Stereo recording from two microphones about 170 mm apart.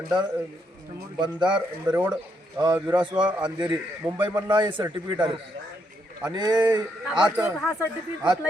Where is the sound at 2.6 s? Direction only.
10° right (ahead or behind).